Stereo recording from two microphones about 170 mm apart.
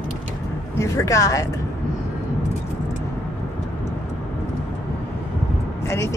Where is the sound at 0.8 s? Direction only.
20° left (ahead or behind).